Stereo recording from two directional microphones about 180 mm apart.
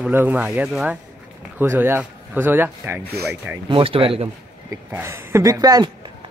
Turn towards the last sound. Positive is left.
turn(degrees=-20)  # may be behind; listen again after turning